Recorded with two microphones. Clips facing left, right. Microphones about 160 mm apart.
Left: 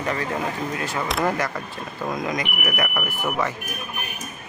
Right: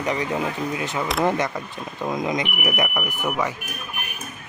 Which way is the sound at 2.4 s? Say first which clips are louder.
Right 2 dB; centre (ahead or behind).